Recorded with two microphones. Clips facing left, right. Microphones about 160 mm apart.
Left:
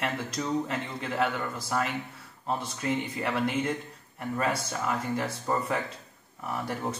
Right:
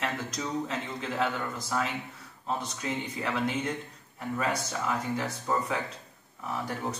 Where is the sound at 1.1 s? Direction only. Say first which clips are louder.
Left 2 dB; 5° left (ahead or behind).